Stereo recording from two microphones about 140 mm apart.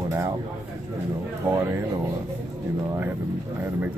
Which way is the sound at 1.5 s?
15° right (ahead or behind).